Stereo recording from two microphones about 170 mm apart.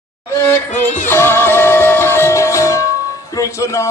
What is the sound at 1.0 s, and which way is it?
Music, 15° left (ahead or behind).